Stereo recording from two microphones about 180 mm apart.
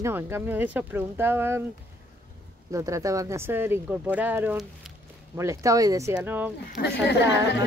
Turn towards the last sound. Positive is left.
turn(degrees=70)  # may be behind; listen again after turning